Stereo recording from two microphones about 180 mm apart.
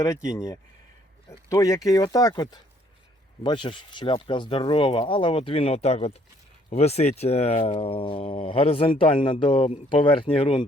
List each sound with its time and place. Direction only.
0.0 s speech: 15° left (ahead or behind)